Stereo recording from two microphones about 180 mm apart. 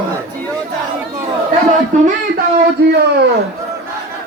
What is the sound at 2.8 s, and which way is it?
Speech, 65° right (ahead or behind).